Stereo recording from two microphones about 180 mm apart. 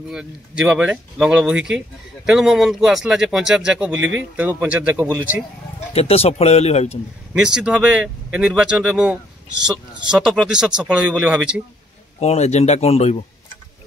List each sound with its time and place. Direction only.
0.1 s speech: 5° right (ahead or behind)
3.9 s speech: 90° right
4.4 s speech: 10° right (ahead or behind)
5.9 s speech: 35° left (ahead or behind)
7.3 s speech: 5° right (ahead or behind)
12.2 s speech: 35° left (ahead or behind)